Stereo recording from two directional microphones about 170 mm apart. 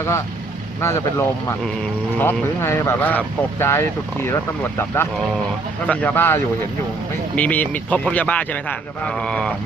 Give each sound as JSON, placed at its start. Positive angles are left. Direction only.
{"t": 0.7, "sound": "speech", "side_deg": 15}